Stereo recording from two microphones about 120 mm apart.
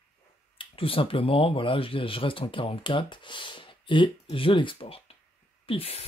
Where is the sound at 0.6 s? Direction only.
50° left (ahead or behind).